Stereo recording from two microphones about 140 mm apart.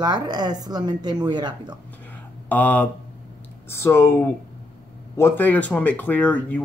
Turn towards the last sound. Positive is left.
turn(degrees=10)  # may be behind; listen again after turning